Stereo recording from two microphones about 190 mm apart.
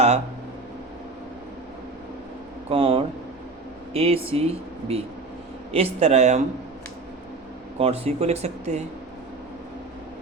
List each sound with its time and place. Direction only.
2.6 s speech: 30° right (ahead or behind)
7.8 s speech: 35° right (ahead or behind)